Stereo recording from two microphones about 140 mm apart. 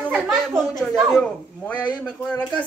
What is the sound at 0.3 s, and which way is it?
A man's voice, centre (ahead or behind).